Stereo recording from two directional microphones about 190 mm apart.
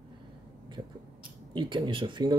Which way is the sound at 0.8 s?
25° right (ahead or behind).